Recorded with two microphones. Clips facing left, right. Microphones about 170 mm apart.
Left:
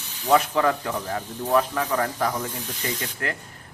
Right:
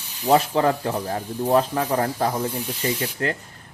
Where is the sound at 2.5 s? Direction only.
10° right (ahead or behind).